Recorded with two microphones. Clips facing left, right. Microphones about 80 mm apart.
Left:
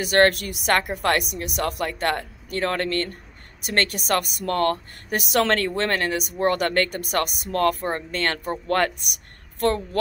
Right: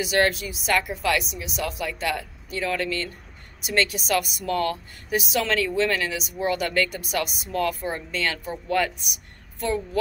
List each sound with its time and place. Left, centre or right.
0.0 s speech: left